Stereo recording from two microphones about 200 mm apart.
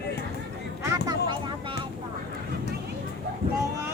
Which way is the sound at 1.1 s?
25° right (ahead or behind).